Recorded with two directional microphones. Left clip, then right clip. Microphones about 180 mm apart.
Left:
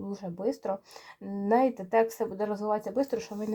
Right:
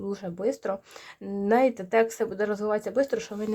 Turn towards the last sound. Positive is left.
turn(degrees=-30)  # may be behind; listen again after turning